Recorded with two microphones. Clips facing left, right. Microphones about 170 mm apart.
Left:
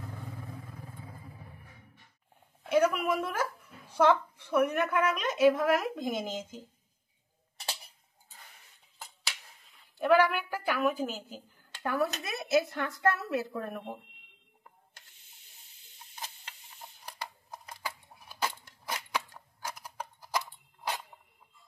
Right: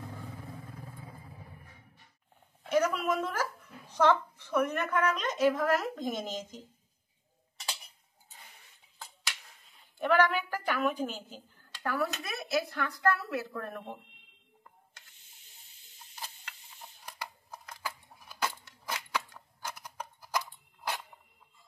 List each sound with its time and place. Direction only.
2.7 s a woman's voice: 10° left (ahead or behind)
8.9 s a sound: 10° left (ahead or behind)
9.9 s a woman's voice: 10° left (ahead or behind)
11.8 s speech: 20° left (ahead or behind)
18.4 s scissors: 10° left (ahead or behind)
20.3 s a sound: 10° left (ahead or behind)